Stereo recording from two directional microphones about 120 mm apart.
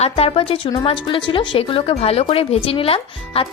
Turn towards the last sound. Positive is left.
turn(degrees=50)  # may be behind; listen again after turning